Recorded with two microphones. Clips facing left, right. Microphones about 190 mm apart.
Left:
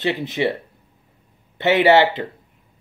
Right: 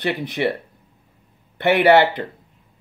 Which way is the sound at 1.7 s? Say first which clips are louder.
Even; 20° left (ahead or behind).